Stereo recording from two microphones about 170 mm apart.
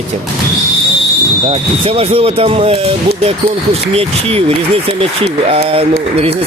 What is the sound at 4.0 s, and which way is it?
Speech, 35° right (ahead or behind).